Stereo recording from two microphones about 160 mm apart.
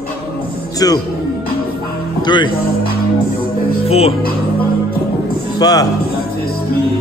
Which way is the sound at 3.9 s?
40° left (ahead or behind).